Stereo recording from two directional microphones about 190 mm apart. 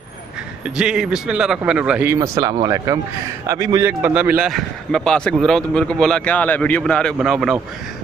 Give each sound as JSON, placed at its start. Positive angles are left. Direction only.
{"t": 0.7, "sound": "a man's voice", "side_deg": -5}